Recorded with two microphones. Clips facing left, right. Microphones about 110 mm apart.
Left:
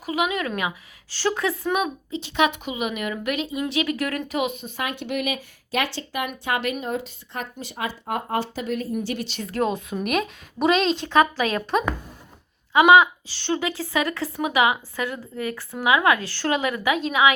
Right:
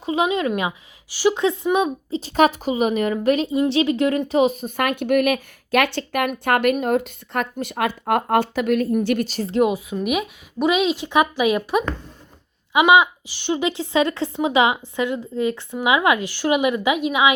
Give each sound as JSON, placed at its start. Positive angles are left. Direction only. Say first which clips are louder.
{"t": 0.0, "sound": "speech", "louder": "right 4 dB", "side_deg": -25}
{"t": 1.1, "sound": "a woman's voice", "louder": "right 5 dB", "side_deg": -15}
{"t": 2.0, "sound": "a woman's voice", "louder": "right 5 dB", "side_deg": -40}
{"t": 4.8, "sound": "speech", "louder": "right 9 dB", "side_deg": -55}
{"t": 9.5, "sound": "a woman's voice", "louder": "right 5 dB", "side_deg": -15}
{"t": 9.7, "sound": "a woman's voice", "louder": "right 2 dB", "side_deg": -5}